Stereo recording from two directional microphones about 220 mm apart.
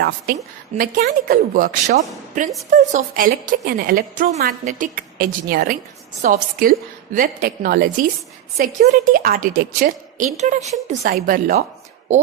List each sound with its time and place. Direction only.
0.8 s a woman's voice: 40° right (ahead or behind)